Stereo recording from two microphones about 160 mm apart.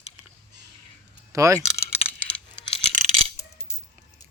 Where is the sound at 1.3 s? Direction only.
20° right (ahead or behind).